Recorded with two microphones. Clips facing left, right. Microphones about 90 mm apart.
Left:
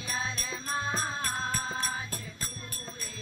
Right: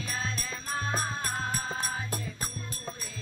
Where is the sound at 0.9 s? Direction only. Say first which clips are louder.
Right 1 dB; 10° right (ahead or behind).